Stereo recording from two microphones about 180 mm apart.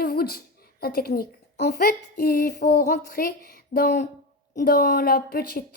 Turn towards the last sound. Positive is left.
turn(degrees=55)  # may be behind; listen again after turning